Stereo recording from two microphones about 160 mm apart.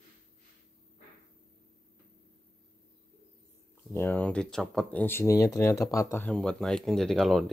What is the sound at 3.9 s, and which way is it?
Speech, 15° left (ahead or behind).